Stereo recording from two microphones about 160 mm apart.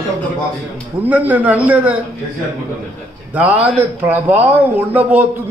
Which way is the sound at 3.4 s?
10° right (ahead or behind).